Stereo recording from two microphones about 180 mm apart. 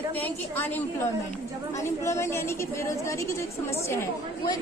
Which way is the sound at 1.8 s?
15° left (ahead or behind).